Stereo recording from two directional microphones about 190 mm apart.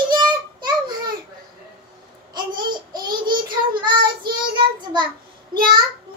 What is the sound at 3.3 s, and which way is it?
Child singing, 25° right (ahead or behind).